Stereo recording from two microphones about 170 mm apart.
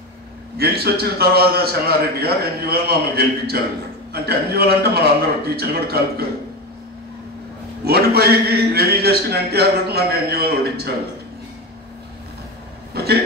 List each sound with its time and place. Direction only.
0.6 s a man's voice: 70° right (ahead or behind)
7.8 s a man's voice: 70° right (ahead or behind)
12.9 s a sound: 70° right (ahead or behind)